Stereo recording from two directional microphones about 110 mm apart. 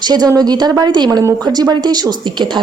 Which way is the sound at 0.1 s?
35° right (ahead or behind).